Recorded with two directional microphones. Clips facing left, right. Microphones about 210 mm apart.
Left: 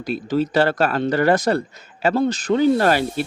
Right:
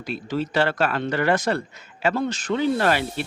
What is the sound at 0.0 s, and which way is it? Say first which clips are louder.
Speech: left 6 dB; 40° left (ahead or behind).